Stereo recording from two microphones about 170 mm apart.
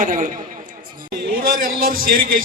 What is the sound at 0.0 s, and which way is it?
Speech, 50° right (ahead or behind).